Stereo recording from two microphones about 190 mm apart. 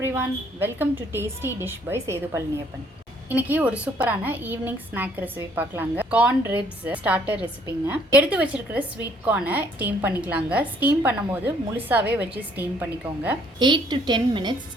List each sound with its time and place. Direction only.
0.0 s a woman's voice: 10° right (ahead or behind)
13.6 s a woman's voice: 25° right (ahead or behind)